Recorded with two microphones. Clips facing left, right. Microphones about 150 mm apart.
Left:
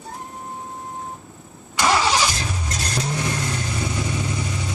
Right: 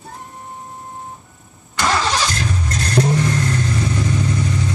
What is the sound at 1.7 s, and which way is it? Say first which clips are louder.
Vehicle: even; 10° left (ahead or behind).